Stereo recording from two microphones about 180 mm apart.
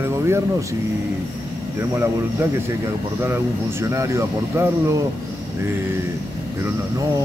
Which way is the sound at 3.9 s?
15° right (ahead or behind).